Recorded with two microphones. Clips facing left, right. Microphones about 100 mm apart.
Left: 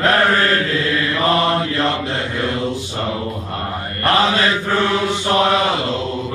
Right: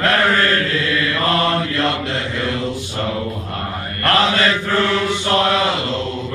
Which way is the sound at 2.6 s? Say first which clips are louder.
Left 1 dB; 15° left (ahead or behind).